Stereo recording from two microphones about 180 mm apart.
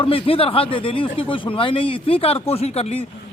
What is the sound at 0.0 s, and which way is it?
Speech, 30° left (ahead or behind).